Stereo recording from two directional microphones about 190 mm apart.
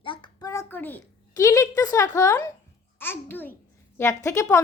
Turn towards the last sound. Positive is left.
turn(degrees=15)  # may be behind; listen again after turning